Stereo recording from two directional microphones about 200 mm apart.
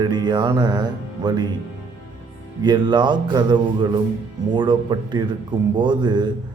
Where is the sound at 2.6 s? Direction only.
20° right (ahead or behind).